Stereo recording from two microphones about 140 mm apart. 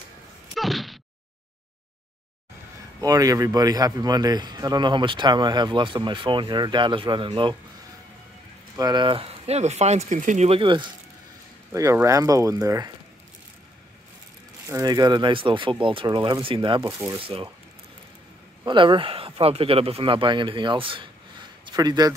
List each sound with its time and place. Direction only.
0.6 s a sound: centre (ahead or behind)
3.0 s speech: 25° right (ahead or behind)
8.7 s speech: 30° right (ahead or behind); by 10.6 s 55° right (ahead or behind)
10.6 s speech: 35° right (ahead or behind)
11.7 s speech: 20° right (ahead or behind)
14.7 s speech: 25° right (ahead or behind)
18.7 s speech: 35° right (ahead or behind)